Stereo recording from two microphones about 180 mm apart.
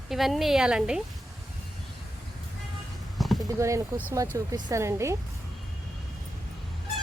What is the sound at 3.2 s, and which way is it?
Horse, centre (ahead or behind).